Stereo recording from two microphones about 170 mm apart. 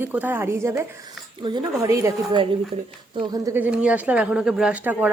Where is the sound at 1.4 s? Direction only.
25° right (ahead or behind).